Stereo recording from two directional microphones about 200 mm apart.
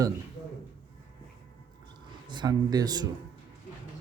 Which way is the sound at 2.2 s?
20° right (ahead or behind).